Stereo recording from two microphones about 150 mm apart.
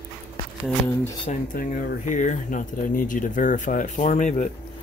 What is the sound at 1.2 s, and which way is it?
Speech, 60° left (ahead or behind).